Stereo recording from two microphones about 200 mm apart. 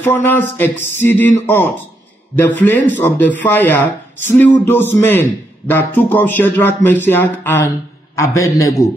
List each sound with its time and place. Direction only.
0.0 s speech: 10° left (ahead or behind)